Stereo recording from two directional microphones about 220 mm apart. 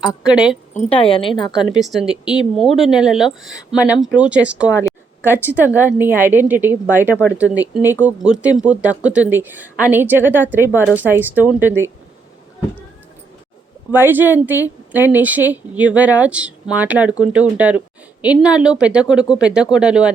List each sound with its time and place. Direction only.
0.2 s speech: 5° right (ahead or behind)
0.7 s a woman's voice: 30° left (ahead or behind)
1.7 s speech: centre (ahead or behind)
4.9 s a sound: 10° right (ahead or behind)
5.8 s a woman's voice: 10° right (ahead or behind)
13.9 s speech: 10° right (ahead or behind)